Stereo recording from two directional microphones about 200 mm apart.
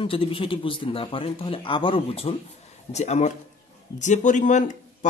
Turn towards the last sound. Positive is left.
turn(degrees=35)  # may be behind; listen again after turning